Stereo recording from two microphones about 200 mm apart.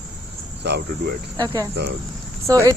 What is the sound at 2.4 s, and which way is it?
Speech, 15° right (ahead or behind).